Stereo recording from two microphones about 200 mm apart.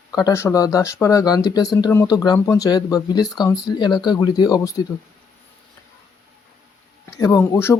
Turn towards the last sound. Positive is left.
turn(degrees=10)  # may be behind; listen again after turning